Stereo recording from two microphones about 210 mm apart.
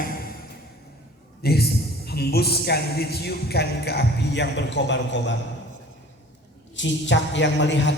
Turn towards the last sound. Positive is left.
turn(degrees=60)  # may be behind; listen again after turning